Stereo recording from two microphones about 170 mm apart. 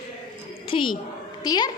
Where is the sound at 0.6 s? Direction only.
30° left (ahead or behind).